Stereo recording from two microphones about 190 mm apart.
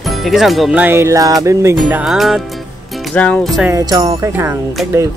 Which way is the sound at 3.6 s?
15° right (ahead or behind).